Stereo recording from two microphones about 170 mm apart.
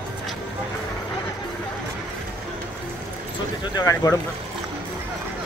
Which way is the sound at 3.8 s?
20° left (ahead or behind).